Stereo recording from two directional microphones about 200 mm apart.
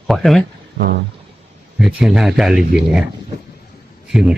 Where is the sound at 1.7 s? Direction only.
5° right (ahead or behind).